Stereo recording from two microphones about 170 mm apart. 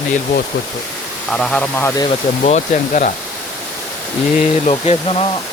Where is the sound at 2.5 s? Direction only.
45° left (ahead or behind).